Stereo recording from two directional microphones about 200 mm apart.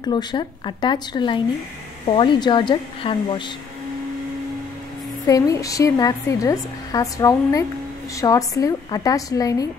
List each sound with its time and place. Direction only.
0.0 s speech: 20° left (ahead or behind)
5.2 s a woman's voice: 15° left (ahead or behind)